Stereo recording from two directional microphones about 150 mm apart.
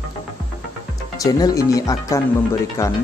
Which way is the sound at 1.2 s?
25° left (ahead or behind).